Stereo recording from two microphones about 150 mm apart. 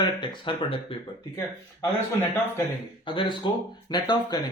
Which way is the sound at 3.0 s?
30° left (ahead or behind).